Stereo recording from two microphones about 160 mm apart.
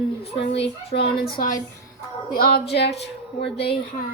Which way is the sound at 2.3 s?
75° left (ahead or behind).